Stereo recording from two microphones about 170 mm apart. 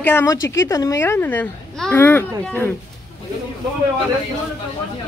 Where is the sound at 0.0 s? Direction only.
15° left (ahead or behind).